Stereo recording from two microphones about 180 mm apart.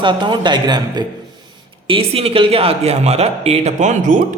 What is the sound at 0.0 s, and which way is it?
A woman's voice, 25° right (ahead or behind).